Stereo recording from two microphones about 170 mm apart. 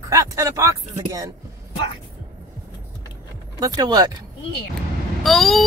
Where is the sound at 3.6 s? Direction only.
25° right (ahead or behind).